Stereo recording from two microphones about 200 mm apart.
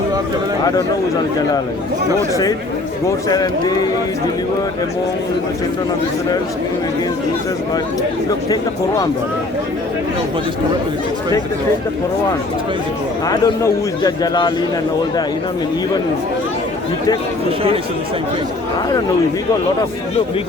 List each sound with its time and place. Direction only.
3.2 s a man's voice: 20° left (ahead or behind)
13.2 s a man's voice: 15° left (ahead or behind)